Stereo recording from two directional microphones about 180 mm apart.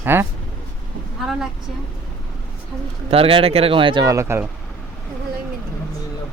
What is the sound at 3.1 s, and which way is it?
Speech, 30° right (ahead or behind).